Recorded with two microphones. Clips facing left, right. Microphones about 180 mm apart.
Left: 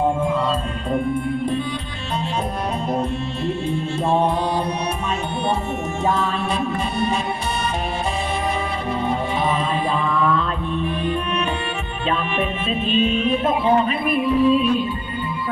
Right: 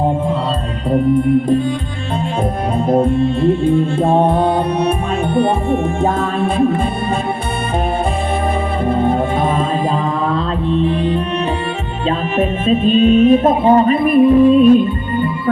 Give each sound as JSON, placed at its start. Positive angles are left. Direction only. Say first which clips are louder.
{"t": 2.7, "sound": "music", "louder": "right 12 dB", "side_deg": -55}
{"t": 8.9, "sound": "music", "louder": "right 8 dB", "side_deg": -55}
{"t": 12.0, "sound": "music", "louder": "right 6 dB", "side_deg": -45}